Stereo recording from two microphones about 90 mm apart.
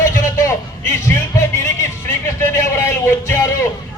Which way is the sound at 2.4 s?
30° left (ahead or behind).